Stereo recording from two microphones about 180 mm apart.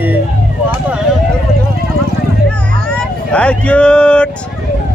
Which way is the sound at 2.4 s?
5° left (ahead or behind).